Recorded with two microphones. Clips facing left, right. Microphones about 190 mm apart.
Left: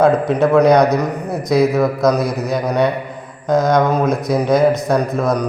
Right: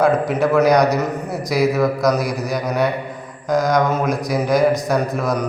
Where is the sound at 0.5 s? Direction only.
25° left (ahead or behind).